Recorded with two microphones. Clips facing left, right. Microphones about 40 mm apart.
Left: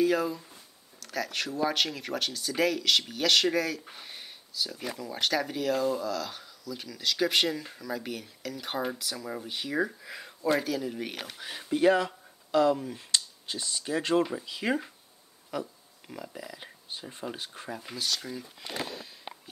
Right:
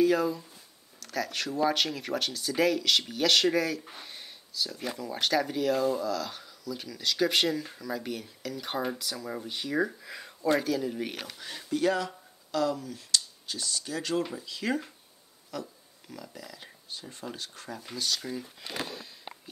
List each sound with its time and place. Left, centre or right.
0.0 s speech: centre
11.3 s speech: centre